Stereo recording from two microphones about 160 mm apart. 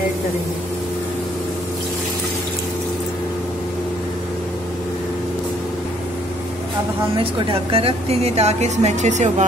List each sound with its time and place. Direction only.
7.3 s speech: 35° right (ahead or behind)